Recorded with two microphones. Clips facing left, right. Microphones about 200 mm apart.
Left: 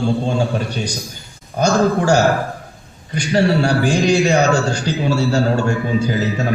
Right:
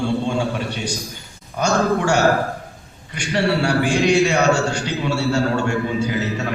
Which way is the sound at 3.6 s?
35° left (ahead or behind).